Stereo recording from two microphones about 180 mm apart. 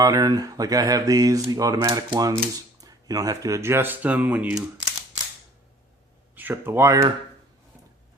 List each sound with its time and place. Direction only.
0.0 s speech: 20° right (ahead or behind)
6.3 s speech: 10° right (ahead or behind)